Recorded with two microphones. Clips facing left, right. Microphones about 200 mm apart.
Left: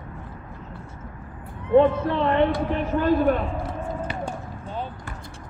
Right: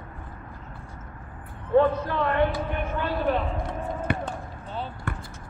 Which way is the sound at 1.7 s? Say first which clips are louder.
Left 3 dB; 25° left (ahead or behind).